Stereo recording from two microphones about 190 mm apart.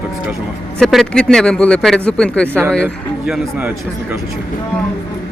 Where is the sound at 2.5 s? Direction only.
10° right (ahead or behind).